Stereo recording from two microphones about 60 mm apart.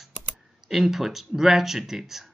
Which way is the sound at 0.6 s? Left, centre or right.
Centre.